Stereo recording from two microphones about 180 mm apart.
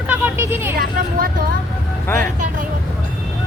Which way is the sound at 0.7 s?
55° right (ahead or behind).